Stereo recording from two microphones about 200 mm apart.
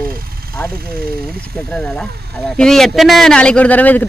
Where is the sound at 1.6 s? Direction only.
5° left (ahead or behind).